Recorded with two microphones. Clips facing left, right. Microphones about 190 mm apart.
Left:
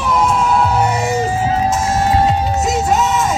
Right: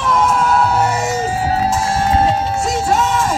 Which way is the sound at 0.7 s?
10° left (ahead or behind).